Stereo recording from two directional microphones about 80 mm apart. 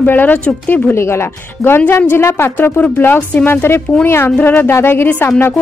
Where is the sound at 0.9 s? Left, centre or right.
Left.